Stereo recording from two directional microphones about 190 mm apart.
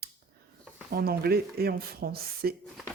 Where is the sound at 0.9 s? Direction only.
55° right (ahead or behind).